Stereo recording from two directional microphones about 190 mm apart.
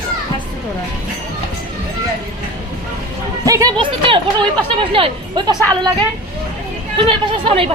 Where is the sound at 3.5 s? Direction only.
20° right (ahead or behind).